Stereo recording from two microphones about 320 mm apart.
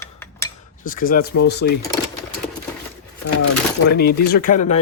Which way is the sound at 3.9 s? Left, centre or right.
Left.